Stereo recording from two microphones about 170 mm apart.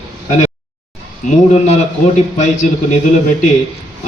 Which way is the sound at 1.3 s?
45° left (ahead or behind).